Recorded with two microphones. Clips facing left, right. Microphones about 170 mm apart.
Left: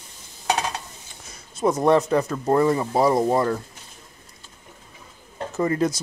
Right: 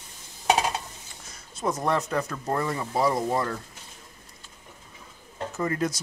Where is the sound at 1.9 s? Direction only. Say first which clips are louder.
Left 9 dB; 25° left (ahead or behind).